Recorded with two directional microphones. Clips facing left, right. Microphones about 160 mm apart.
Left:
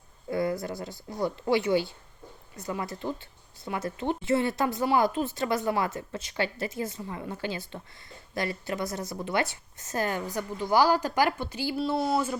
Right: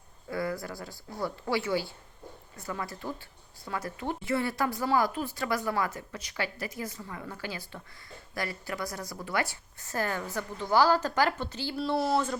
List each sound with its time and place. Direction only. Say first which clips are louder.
0.3 s speech: left 4 dB; 20° left (ahead or behind)
11.8 s speech: even; centre (ahead or behind)